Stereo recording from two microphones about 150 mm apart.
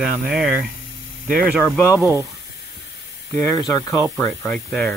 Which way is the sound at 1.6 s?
15° left (ahead or behind).